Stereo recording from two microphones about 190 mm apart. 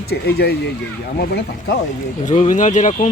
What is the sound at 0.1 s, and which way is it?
Speech, 55° left (ahead or behind).